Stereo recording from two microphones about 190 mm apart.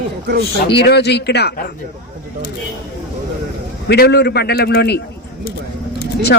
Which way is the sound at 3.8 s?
60° left (ahead or behind).